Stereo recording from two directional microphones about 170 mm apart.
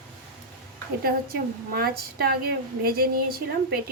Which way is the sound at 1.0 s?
60° right (ahead or behind).